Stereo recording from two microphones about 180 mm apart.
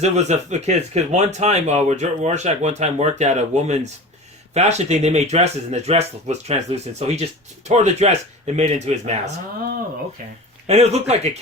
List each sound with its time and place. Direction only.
0.0 s speech: 40° right (ahead or behind)
10.7 s speech: 35° right (ahead or behind)